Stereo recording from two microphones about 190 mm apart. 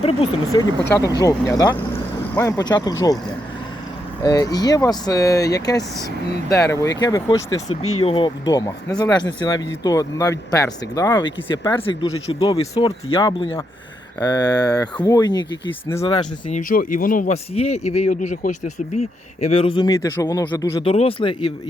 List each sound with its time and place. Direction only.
0.0 s speech: 30° left (ahead or behind)
0.5 s speech: 15° left (ahead or behind)
1.9 s vehicle: 15° left (ahead or behind)
3.0 s speech: 20° left (ahead or behind)
16.1 s speech: 40° left (ahead or behind); by 20.8 s 20° left (ahead or behind)
20.8 s speech: 30° left (ahead or behind)